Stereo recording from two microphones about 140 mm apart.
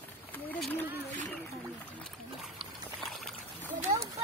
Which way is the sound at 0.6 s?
10° left (ahead or behind).